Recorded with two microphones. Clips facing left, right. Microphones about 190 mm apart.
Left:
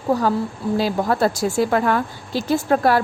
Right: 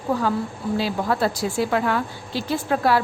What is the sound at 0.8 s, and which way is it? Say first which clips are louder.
A woman's voice: left 4 dB; 45° left (ahead or behind).